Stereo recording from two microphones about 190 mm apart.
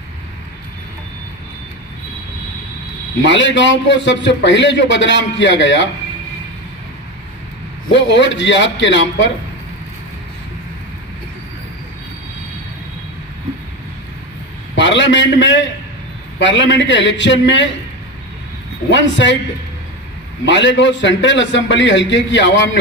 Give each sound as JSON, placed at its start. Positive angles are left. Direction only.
{"t": 3.2, "sound": "a man's voice", "side_deg": 75}
{"t": 7.9, "sound": "a man's voice", "side_deg": 70}
{"t": 14.8, "sound": "a man's voice", "side_deg": 75}
{"t": 18.9, "sound": "a man's voice", "side_deg": 75}
{"t": 20.4, "sound": "a man's voice", "side_deg": 75}